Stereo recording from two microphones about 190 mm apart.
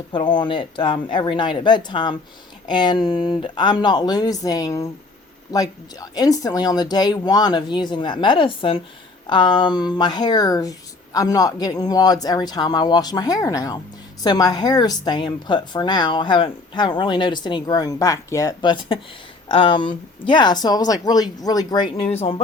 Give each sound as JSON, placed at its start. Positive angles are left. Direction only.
{"t": 0.1, "sound": "a woman's voice", "side_deg": 25}
{"t": 22.1, "sound": "speech", "side_deg": 30}